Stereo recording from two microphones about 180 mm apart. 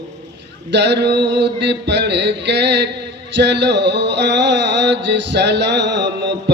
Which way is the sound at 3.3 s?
75° right (ahead or behind).